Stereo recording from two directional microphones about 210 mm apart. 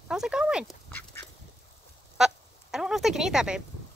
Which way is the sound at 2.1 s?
Centre (ahead or behind).